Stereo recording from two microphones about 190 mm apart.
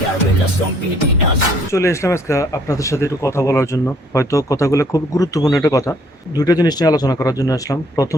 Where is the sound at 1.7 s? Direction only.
15° left (ahead or behind).